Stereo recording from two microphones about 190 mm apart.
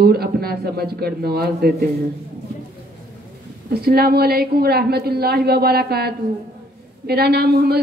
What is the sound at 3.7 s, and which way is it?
A man's voice, 55° right (ahead or behind).